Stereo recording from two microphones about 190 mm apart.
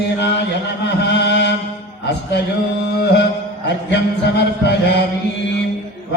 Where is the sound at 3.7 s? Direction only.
65° left (ahead or behind).